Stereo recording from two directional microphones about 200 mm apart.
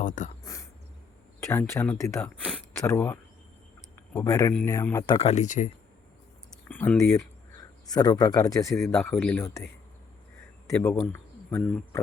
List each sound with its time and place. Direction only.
0.0 s speech: 40° left (ahead or behind)
0.4 s throat clearing: 15° left (ahead or behind)
1.4 s speech: 10° left (ahead or behind)
2.5 s a sound: 10° left (ahead or behind)
4.1 s speech: 15° left (ahead or behind)
5.1 s speech: 30° left (ahead or behind)
6.7 s speech: 5° left (ahead or behind)
10.7 s speech: 15° left (ahead or behind)